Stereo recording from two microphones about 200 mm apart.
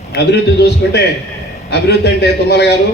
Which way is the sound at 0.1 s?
55° left (ahead or behind).